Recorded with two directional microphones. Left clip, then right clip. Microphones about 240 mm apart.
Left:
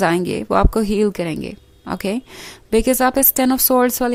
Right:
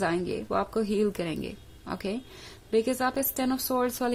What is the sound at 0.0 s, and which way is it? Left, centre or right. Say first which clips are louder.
Speech: left 11 dB; left.